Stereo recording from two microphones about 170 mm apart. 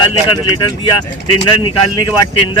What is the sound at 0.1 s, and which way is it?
Speech, 30° left (ahead or behind).